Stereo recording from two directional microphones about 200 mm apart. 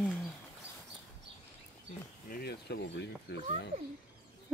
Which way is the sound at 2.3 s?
55° left (ahead or behind).